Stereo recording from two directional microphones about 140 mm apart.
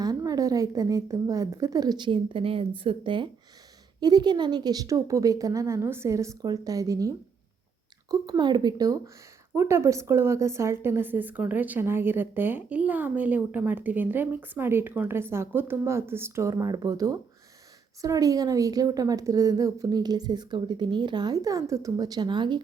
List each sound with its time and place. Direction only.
0.0 s a woman's voice: 25° right (ahead or behind)
8.1 s a woman's voice: 30° right (ahead or behind)